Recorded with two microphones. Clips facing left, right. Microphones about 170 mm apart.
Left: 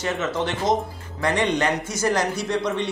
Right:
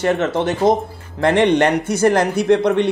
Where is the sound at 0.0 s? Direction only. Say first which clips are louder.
Right 7 dB; 55° right (ahead or behind).